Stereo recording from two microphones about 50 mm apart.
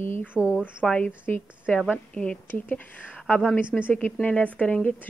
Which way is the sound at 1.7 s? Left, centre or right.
Left.